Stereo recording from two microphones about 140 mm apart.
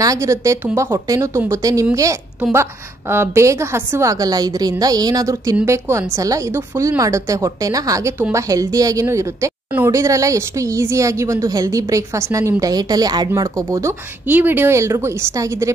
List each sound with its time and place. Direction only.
0.0 s a woman's voice: 25° right (ahead or behind)